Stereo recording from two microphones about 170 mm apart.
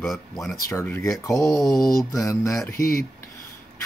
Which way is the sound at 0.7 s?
15° left (ahead or behind).